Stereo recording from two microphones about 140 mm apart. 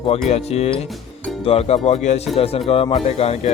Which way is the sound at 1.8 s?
55° left (ahead or behind).